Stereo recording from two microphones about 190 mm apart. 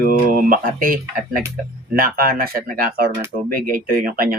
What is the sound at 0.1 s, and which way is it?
Speech, 45° right (ahead or behind).